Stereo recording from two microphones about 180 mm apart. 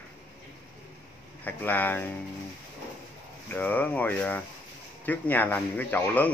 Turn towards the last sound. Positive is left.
turn(degrees=10)  # may be behind; listen again after turning